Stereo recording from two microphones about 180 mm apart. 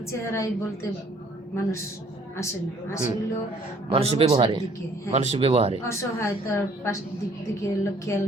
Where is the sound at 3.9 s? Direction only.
35° right (ahead or behind).